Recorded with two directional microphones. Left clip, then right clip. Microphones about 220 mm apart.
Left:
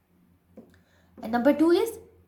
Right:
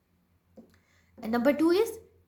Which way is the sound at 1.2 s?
40° right (ahead or behind).